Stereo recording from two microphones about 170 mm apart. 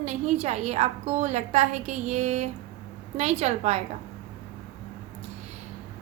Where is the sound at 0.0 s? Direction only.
40° right (ahead or behind).